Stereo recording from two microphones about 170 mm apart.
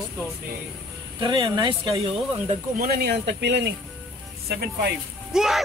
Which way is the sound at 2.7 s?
65° right (ahead or behind).